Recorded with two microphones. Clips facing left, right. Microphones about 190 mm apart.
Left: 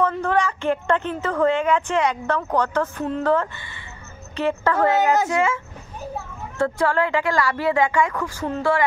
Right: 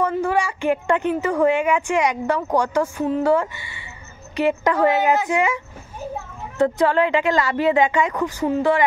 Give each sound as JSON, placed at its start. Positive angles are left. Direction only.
{"t": 0.0, "sound": "speech", "side_deg": -10}
{"t": 6.6, "sound": "a woman's voice", "side_deg": -20}